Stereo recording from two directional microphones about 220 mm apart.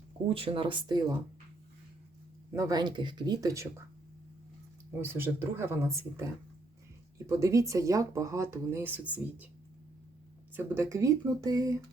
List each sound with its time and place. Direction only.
0.3 s speech: 25° right (ahead or behind)
2.5 s speech: 15° right (ahead or behind)
4.9 s speech: 10° right (ahead or behind)
7.3 s speech: 15° right (ahead or behind)
10.5 s speech: 10° right (ahead or behind)